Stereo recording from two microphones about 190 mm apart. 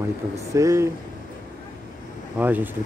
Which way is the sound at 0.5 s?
15° right (ahead or behind).